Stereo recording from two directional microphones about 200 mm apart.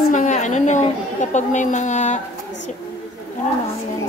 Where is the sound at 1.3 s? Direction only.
35° left (ahead or behind).